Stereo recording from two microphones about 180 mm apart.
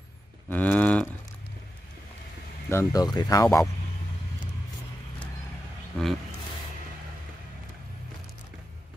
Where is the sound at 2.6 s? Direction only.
15° left (ahead or behind).